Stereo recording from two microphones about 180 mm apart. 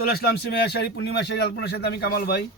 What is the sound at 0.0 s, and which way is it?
A man's voice, 55° left (ahead or behind).